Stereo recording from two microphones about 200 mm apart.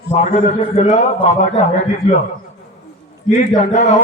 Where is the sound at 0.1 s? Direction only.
35° left (ahead or behind).